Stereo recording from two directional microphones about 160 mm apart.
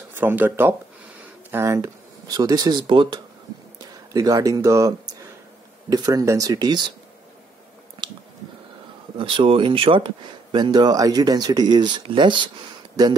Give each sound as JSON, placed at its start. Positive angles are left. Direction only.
{"t": 0.1, "sound": "speech", "side_deg": -10}
{"t": 9.2, "sound": "speech", "side_deg": -30}